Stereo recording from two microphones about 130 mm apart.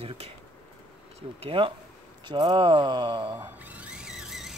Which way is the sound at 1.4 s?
45° right (ahead or behind).